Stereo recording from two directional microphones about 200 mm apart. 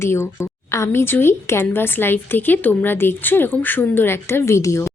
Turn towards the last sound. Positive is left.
turn(degrees=15)  # may be behind; listen again after turning